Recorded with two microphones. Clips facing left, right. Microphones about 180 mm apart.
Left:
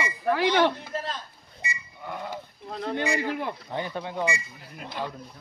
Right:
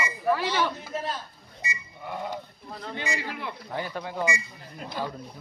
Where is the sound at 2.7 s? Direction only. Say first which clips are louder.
Left 6 dB; 60° left (ahead or behind).